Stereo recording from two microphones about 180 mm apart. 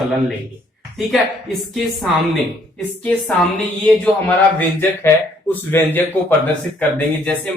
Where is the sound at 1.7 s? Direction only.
Centre (ahead or behind).